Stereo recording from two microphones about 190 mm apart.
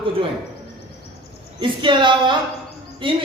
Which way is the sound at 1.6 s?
25° right (ahead or behind).